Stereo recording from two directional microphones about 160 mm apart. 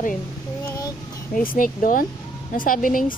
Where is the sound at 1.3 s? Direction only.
60° left (ahead or behind).